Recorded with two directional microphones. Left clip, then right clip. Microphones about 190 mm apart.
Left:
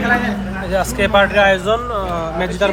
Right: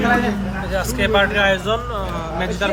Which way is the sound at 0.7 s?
5° right (ahead or behind).